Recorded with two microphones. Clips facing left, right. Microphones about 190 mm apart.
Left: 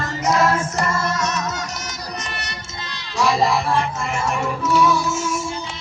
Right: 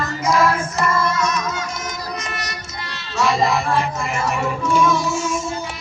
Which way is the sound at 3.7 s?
5° right (ahead or behind).